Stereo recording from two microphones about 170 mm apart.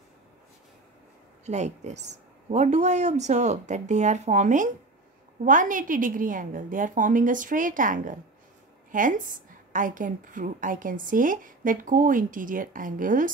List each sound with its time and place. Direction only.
1.4 s a woman's voice: 40° right (ahead or behind)